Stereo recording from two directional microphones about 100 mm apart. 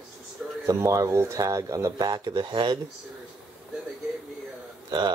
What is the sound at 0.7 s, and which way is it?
Speech, 35° right (ahead or behind).